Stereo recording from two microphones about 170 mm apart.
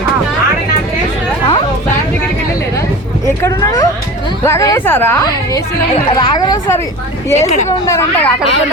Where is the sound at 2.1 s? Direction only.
20° left (ahead or behind).